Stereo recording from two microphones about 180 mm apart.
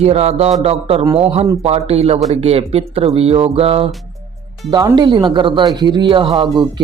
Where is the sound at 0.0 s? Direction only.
35° right (ahead or behind).